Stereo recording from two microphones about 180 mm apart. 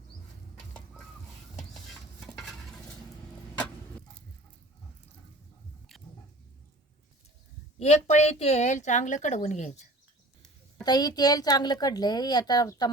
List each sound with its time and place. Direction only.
1.5 s stir: centre (ahead or behind)
7.8 s a woman's voice: 35° left (ahead or behind)
10.8 s speech: 20° left (ahead or behind)